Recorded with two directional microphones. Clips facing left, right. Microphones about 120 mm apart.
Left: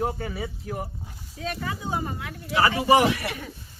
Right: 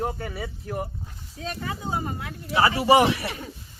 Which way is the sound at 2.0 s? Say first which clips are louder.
Even; 30° right (ahead or behind).